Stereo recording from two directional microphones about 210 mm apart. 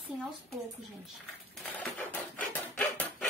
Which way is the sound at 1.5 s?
10° left (ahead or behind).